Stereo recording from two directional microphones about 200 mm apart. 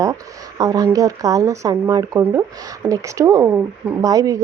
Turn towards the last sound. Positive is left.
turn(degrees=-15)  # may be behind; listen again after turning